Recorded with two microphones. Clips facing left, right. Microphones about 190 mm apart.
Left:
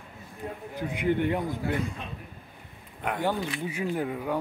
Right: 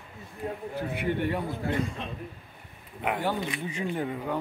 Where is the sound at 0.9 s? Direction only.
15° left (ahead or behind).